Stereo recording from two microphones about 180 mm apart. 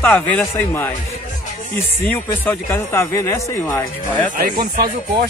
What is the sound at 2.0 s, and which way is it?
Speech, 10° left (ahead or behind).